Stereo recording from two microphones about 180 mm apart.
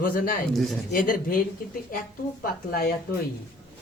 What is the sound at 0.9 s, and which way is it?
Speech, 50° left (ahead or behind).